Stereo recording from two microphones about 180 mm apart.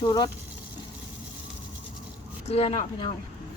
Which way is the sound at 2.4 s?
35° left (ahead or behind).